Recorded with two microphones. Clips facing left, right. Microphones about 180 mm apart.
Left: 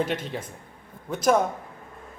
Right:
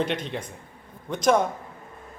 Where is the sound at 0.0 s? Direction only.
5° left (ahead or behind).